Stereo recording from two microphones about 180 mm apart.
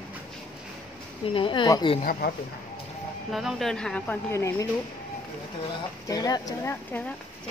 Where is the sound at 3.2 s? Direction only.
Centre (ahead or behind); by 4.6 s 15° left (ahead or behind).